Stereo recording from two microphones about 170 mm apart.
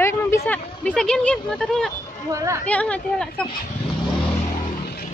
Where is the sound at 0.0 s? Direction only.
10° left (ahead or behind).